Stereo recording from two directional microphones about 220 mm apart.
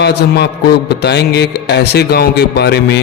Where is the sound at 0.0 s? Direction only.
50° left (ahead or behind).